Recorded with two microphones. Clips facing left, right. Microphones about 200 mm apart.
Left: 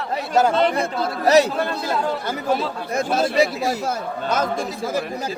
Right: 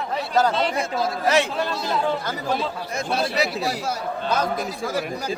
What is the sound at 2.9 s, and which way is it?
Speech, 50° left (ahead or behind).